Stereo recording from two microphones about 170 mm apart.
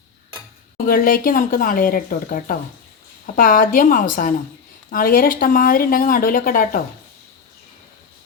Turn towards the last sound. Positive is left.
turn(degrees=55)  # may be behind; listen again after turning